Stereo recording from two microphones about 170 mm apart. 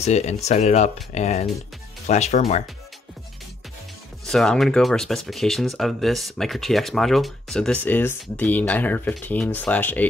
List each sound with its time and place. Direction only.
0.0 s speech: 40° left (ahead or behind)
4.3 s speech: centre (ahead or behind)